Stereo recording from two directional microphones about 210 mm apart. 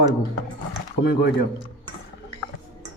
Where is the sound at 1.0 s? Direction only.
50° left (ahead or behind).